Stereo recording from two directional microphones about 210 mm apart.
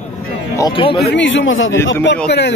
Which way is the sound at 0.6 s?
25° left (ahead or behind).